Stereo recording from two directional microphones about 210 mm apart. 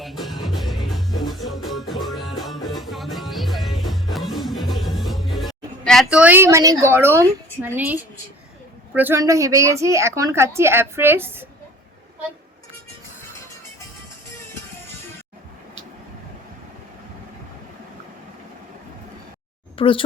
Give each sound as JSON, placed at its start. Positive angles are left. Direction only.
{"t": 0.0, "sound": "music", "side_deg": 0}
{"t": 8.9, "sound": "a woman's voice", "side_deg": -10}
{"t": 19.7, "sound": "speech", "side_deg": 25}